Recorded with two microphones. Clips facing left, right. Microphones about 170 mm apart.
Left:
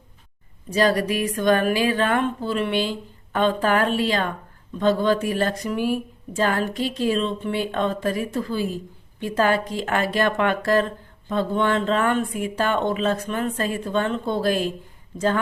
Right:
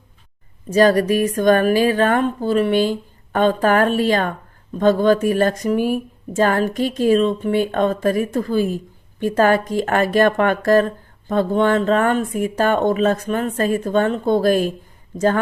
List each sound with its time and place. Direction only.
0.7 s a woman's voice: 45° right (ahead or behind)